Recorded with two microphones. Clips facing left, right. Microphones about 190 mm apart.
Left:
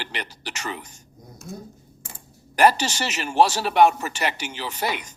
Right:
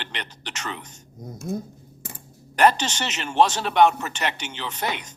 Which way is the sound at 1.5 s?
60° right (ahead or behind).